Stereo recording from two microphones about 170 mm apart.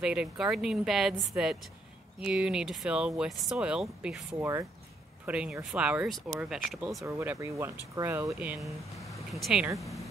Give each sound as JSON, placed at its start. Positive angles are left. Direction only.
{"t": 0.0, "sound": "speech", "side_deg": -5}
{"t": 7.0, "sound": "speech", "side_deg": -15}